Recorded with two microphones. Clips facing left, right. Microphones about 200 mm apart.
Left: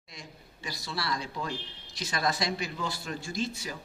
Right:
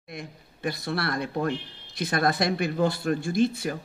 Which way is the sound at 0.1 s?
55° right (ahead or behind).